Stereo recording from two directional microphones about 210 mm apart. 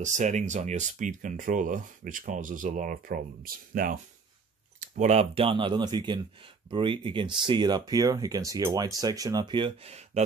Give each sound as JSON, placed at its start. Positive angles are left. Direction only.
{"t": 0.0, "sound": "speech", "side_deg": -35}